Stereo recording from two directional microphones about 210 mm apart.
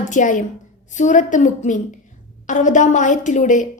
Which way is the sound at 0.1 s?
40° left (ahead or behind).